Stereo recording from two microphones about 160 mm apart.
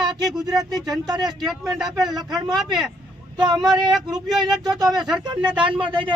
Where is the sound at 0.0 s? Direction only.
25° right (ahead or behind).